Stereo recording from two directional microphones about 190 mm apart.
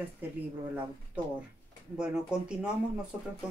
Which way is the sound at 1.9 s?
5° right (ahead or behind).